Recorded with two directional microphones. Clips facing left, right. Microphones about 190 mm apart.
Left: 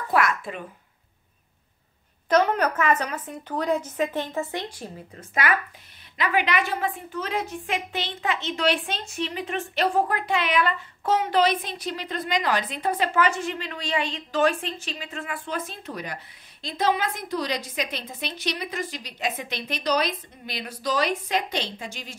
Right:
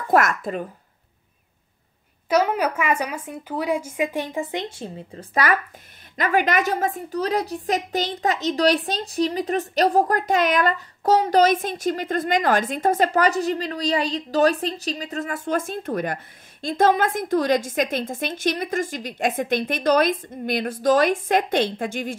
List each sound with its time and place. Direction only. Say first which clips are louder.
0.1 s a woman's voice: right 5 dB; 45° right (ahead or behind)
2.2 s a woman's voice: right 1 dB; 10° right (ahead or behind); by 5.2 s 25° right (ahead or behind)
5.4 s a woman's voice: right 1 dB; 40° right (ahead or behind)